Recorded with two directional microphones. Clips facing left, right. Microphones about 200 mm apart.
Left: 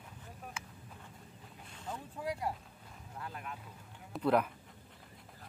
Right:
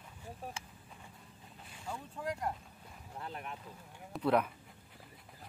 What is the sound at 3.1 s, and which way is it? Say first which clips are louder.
Boat: right 1 dB; 25° right (ahead or behind).